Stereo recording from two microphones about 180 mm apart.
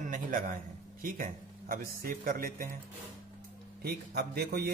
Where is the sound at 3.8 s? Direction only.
60° right (ahead or behind).